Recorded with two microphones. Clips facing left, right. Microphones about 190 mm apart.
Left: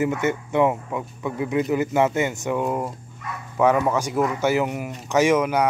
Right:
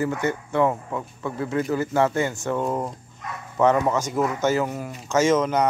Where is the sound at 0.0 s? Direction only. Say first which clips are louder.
Left 2 dB; 20° left (ahead or behind).